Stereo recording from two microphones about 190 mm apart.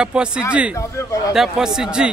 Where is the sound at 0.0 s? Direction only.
5° right (ahead or behind).